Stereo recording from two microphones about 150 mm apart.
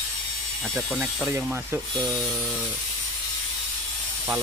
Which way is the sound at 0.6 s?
5° left (ahead or behind).